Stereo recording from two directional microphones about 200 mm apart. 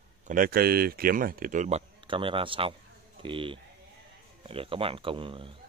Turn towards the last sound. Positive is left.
turn(degrees=-25)  # may be behind; listen again after turning